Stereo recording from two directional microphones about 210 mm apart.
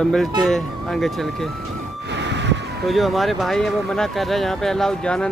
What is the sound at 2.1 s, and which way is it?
Vehicle, 55° right (ahead or behind).